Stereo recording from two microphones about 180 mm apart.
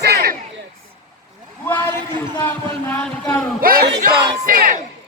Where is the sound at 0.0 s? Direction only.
60° right (ahead or behind).